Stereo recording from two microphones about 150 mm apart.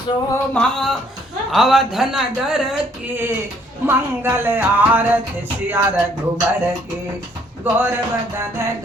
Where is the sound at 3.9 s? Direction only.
15° right (ahead or behind).